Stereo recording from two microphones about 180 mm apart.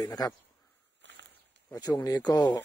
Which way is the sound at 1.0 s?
75° right (ahead or behind).